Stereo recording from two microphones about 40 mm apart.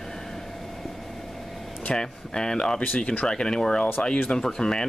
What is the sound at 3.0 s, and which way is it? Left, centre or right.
Speech, left.